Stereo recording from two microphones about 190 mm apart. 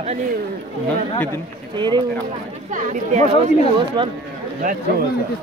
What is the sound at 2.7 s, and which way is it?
Speech, 40° right (ahead or behind).